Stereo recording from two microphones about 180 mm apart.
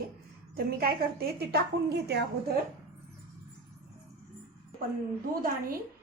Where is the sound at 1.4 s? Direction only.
60° right (ahead or behind).